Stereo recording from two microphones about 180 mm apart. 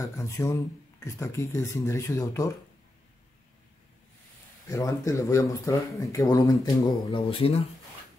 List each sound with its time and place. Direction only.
0.0 s speech: 15° left (ahead or behind)
4.6 s speech: 20° left (ahead or behind)